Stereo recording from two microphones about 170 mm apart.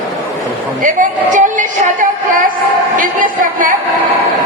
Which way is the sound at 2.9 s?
55° right (ahead or behind).